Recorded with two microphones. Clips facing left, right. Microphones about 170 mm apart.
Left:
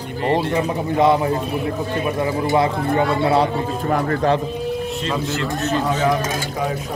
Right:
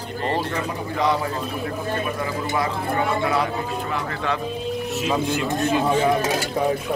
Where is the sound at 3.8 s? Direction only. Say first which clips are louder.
Left 8 dB; 45° left (ahead or behind).